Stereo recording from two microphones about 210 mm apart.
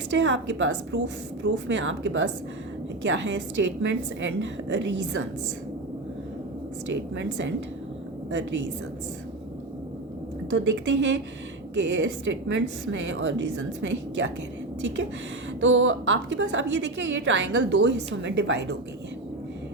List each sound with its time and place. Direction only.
0.1 s a woman's voice: 55° right (ahead or behind)
7.2 s a woman's voice: 60° right (ahead or behind)
10.5 s a woman's voice: 60° right (ahead or behind)
15.6 s a woman's voice: 65° right (ahead or behind)